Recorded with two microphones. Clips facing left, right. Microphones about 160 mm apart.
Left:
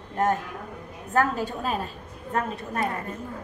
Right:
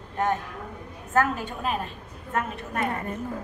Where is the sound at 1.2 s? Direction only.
35° left (ahead or behind).